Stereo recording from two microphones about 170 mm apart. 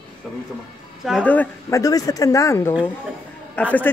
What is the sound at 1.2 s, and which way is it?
Speech, 10° left (ahead or behind).